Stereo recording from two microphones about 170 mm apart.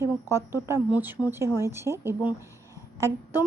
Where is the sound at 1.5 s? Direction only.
15° right (ahead or behind).